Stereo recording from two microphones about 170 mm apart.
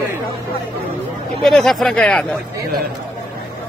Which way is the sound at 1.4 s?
Centre (ahead or behind).